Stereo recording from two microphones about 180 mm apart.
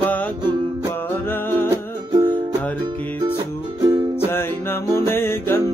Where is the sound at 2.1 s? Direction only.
25° right (ahead or behind).